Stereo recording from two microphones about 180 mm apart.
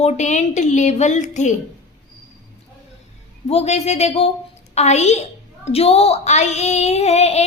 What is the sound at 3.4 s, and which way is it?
A woman's voice, 35° left (ahead or behind).